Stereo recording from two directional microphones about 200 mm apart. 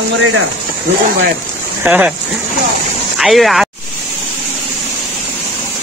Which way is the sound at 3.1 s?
Centre (ahead or behind).